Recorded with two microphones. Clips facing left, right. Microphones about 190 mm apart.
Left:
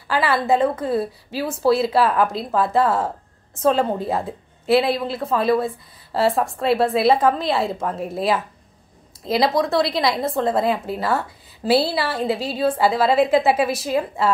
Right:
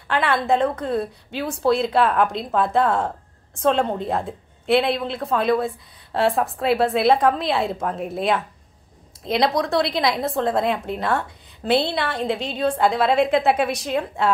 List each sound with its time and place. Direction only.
0.1 s speech: 5° left (ahead or behind)